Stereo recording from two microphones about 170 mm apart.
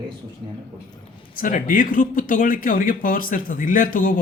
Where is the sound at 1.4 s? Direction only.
55° left (ahead or behind).